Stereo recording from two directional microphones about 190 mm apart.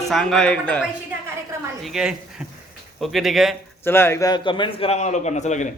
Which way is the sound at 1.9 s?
5° right (ahead or behind).